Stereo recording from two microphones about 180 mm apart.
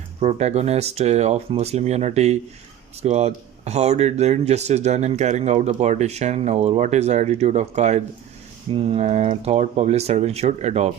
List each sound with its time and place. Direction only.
0.2 s speech: 40° right (ahead or behind)